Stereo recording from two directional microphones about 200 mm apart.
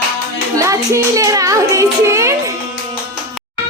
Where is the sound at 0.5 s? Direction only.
15° right (ahead or behind).